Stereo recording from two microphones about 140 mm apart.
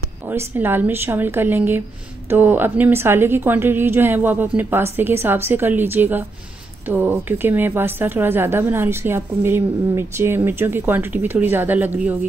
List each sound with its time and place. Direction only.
0.3 s a woman's voice: 15° right (ahead or behind)